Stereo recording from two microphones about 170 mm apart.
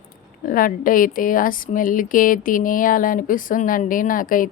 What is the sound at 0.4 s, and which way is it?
A woman's voice, 55° left (ahead or behind).